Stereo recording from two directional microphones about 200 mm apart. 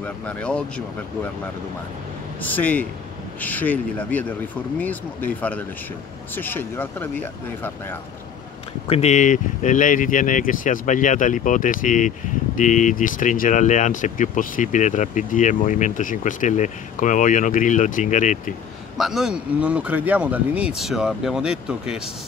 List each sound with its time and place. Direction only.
0.0 s speech: 5° left (ahead or behind)
2.4 s speech: 10° left (ahead or behind)
8.8 s speech: 30° left (ahead or behind)
18.9 s speech: centre (ahead or behind)